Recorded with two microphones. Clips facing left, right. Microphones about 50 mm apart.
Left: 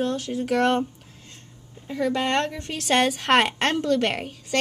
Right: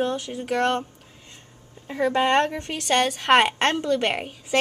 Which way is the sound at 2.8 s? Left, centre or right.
Centre.